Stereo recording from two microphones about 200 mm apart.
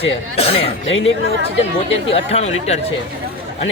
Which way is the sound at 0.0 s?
30° left (ahead or behind).